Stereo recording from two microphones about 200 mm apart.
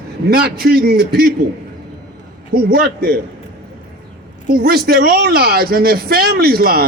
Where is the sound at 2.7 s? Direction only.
50° right (ahead or behind).